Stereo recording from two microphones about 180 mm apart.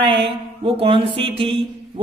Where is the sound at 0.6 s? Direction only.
30° right (ahead or behind).